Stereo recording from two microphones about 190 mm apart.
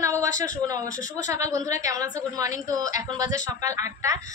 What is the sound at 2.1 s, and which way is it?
A woman's voice, 20° right (ahead or behind).